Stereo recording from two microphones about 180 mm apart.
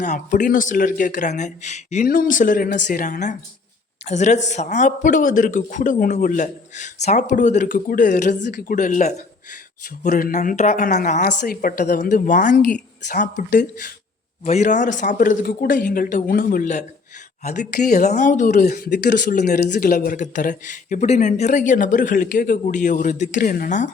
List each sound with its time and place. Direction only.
0.0 s speech: 45° left (ahead or behind)
2.0 s speech: 50° left (ahead or behind)
12.0 s speech: 45° left (ahead or behind)